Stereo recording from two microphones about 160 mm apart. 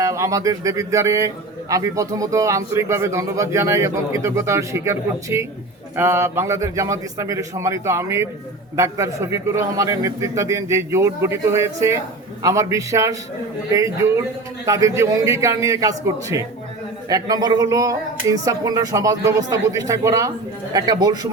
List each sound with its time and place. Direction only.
0.0 s a man's voice: 20° right (ahead or behind)